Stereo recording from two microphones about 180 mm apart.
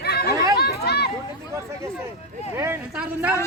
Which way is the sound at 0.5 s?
60° left (ahead or behind).